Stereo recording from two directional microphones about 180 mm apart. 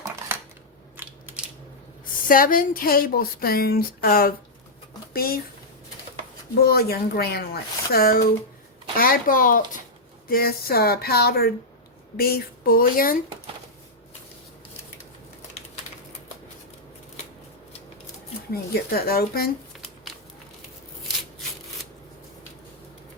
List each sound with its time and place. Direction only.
2.2 s speech: 50° left (ahead or behind)
6.7 s speech: 60° left (ahead or behind)
18.5 s speech: 60° left (ahead or behind)